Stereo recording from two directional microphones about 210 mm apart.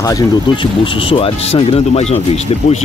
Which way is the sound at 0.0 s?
20° left (ahead or behind).